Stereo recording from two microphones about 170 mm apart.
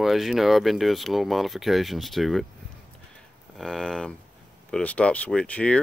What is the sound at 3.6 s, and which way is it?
Speech, 5° left (ahead or behind).